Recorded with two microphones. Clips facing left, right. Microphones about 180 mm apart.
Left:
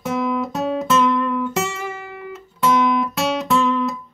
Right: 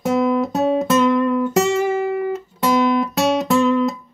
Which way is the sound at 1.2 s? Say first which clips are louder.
Right 5 dB; 40° right (ahead or behind).